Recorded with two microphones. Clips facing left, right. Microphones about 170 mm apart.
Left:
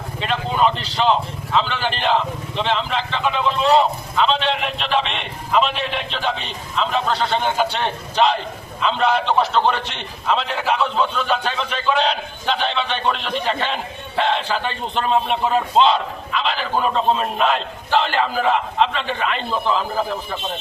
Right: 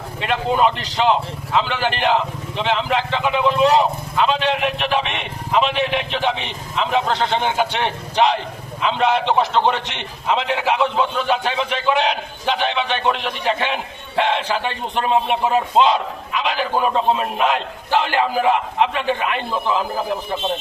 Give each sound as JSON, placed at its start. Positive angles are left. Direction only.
{"t": 0.3, "sound": "a man's voice", "side_deg": -15}